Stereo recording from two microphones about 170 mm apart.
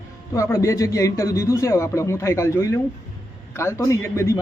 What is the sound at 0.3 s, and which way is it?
A man's voice, 20° left (ahead or behind).